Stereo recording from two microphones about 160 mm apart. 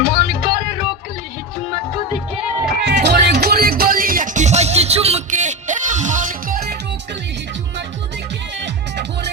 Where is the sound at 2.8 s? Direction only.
90° right; by 6.7 s 65° right (ahead or behind).